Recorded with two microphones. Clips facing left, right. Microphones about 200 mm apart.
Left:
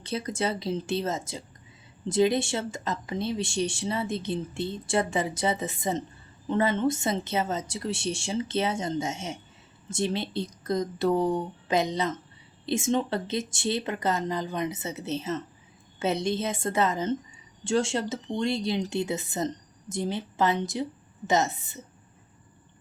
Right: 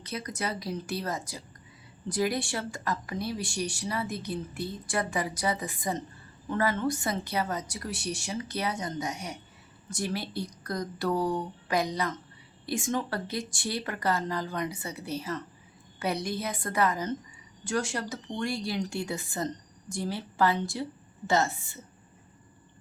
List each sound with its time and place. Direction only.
0.0 s speech: 30° left (ahead or behind)